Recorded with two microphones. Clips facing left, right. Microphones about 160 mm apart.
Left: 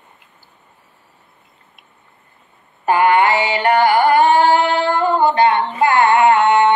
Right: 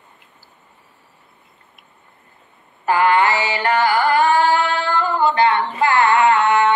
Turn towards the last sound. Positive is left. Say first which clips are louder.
# left 3 dB
turn(degrees=20)  # may be behind; listen again after turning